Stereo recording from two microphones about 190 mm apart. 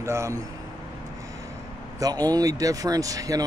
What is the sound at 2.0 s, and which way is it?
Speech, 20° right (ahead or behind).